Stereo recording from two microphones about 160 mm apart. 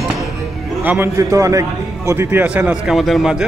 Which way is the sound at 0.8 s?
15° right (ahead or behind).